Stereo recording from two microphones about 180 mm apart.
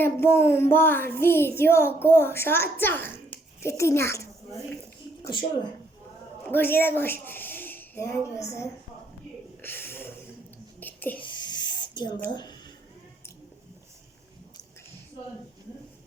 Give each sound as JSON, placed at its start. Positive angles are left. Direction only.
{"t": 0.0, "sound": "speech", "side_deg": 15}
{"t": 6.5, "sound": "speech", "side_deg": 10}
{"t": 10.8, "sound": "whispering", "side_deg": 10}
{"t": 11.2, "sound": "snake", "side_deg": 25}
{"t": 12.3, "sound": "speech", "side_deg": 25}